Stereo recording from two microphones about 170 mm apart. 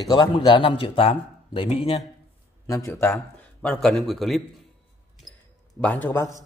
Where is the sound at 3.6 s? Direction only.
5° left (ahead or behind).